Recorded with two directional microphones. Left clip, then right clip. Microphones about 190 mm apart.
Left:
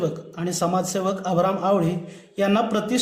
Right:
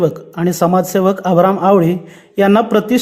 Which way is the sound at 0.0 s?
40° right (ahead or behind).